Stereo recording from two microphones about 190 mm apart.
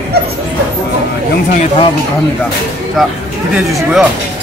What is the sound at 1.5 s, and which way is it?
Speech, 40° left (ahead or behind).